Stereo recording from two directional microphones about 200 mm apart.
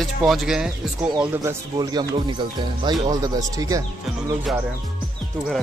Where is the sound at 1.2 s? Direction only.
15° right (ahead or behind).